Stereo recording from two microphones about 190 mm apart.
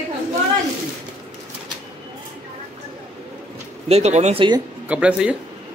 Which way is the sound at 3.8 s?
35° right (ahead or behind).